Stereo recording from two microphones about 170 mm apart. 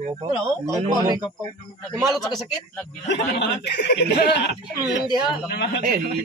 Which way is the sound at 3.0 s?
90° left.